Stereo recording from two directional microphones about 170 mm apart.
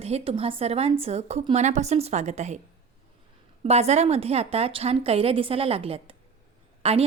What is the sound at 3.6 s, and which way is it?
A woman's voice, 40° right (ahead or behind).